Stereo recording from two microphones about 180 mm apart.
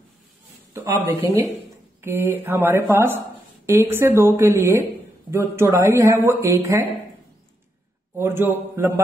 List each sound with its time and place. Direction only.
0.8 s speech: 15° right (ahead or behind)
8.2 s speech: 10° right (ahead or behind)